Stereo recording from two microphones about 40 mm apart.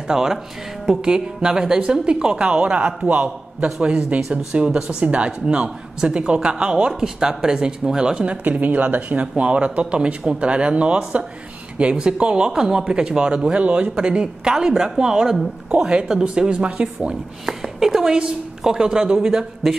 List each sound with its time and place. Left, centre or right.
0.1 s a woman's voice: centre
8.3 s speech: right
9.4 s a woman's voice: right
17.5 s a woman's voice: centre